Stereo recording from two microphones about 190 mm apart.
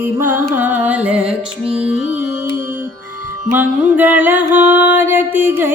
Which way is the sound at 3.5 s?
10° right (ahead or behind).